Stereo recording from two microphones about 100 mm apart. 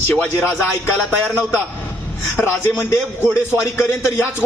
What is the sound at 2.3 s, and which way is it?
Speech, 20° left (ahead or behind).